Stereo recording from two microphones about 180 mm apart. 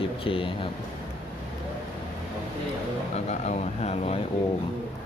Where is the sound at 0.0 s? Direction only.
30° left (ahead or behind).